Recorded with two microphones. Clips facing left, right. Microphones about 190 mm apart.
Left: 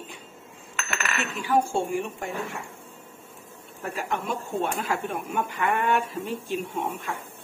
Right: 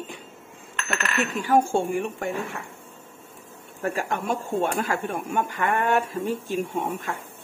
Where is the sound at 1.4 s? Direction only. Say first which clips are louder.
Right 2 dB; 50° right (ahead or behind).